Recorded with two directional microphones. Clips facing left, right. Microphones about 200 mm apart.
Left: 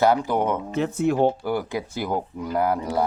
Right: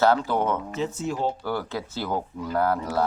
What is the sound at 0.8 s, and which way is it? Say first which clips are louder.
Speech: left 11 dB; 60° left (ahead or behind).